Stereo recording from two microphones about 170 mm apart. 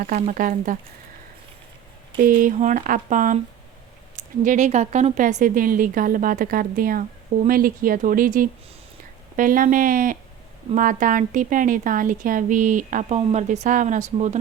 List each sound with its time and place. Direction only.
0.2 s a woman's voice: 50° right (ahead or behind)
2.1 s a woman's voice: 50° right (ahead or behind)
4.4 s a woman's voice: 45° right (ahead or behind)